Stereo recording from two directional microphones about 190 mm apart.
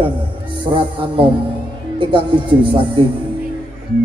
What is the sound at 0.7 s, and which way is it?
A man's voice, 25° right (ahead or behind).